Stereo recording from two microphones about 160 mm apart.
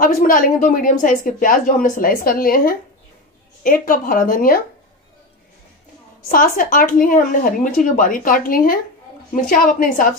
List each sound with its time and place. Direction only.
0.0 s a woman's voice: 60° left (ahead or behind)
6.2 s a woman's voice: 60° left (ahead or behind)